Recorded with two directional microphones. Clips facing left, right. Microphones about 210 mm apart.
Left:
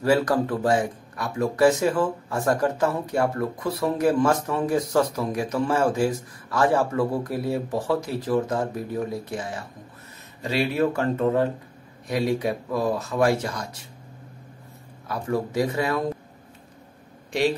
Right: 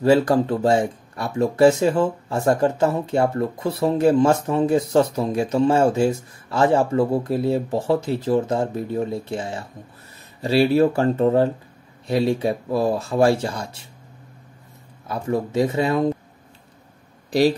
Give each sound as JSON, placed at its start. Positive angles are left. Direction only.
{"t": 0.0, "sound": "speech", "side_deg": -25}
{"t": 15.0, "sound": "speech", "side_deg": -25}